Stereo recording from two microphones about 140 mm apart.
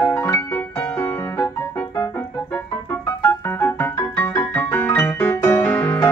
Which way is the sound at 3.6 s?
20° left (ahead or behind).